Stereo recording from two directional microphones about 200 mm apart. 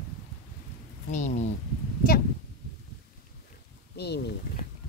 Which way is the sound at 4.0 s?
55° left (ahead or behind).